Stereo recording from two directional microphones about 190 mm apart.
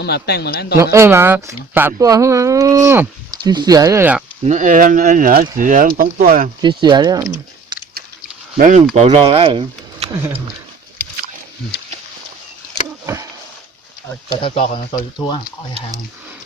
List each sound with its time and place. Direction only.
0.0 s a man's voice: 60° left (ahead or behind)
0.8 s speech: 15° right (ahead or behind)
4.4 s speech: 40° right (ahead or behind)
6.6 s speech: 25° right (ahead or behind)
7.7 s biting: 20° right (ahead or behind)
8.5 s speech: 45° right (ahead or behind); by 10.1 s 30° right (ahead or behind)
13.1 s a sound: 15° right (ahead or behind)
14.4 s speech: 30° left (ahead or behind)